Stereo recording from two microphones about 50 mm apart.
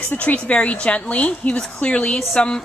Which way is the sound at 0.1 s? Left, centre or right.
Left.